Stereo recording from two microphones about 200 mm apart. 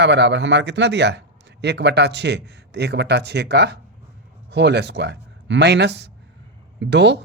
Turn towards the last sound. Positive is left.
turn(degrees=-60)  # may be behind; listen again after turning